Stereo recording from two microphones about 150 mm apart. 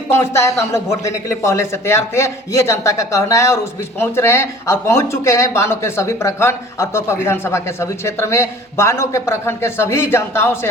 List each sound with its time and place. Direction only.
0.1 s speech: 20° left (ahead or behind)